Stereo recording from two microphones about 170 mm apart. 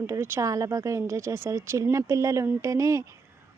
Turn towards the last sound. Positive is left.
turn(degrees=-20)  # may be behind; listen again after turning